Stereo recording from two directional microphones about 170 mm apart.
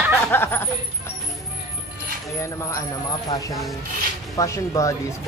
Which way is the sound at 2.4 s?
15° left (ahead or behind).